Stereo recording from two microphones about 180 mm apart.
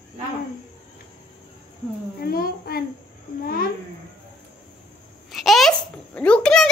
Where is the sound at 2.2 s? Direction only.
55° left (ahead or behind).